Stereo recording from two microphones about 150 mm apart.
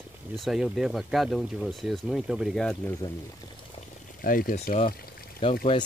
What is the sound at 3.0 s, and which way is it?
Speech, 25° left (ahead or behind).